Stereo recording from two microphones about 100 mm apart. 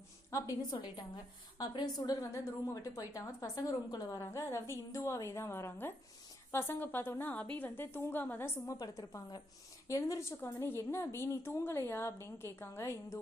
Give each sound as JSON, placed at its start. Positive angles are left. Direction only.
{"t": 0.3, "sound": "a woman's voice", "side_deg": 40}
{"t": 8.6, "sound": "a woman's voice", "side_deg": 35}